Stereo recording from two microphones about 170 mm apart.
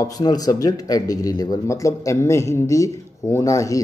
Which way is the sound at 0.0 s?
20° left (ahead or behind).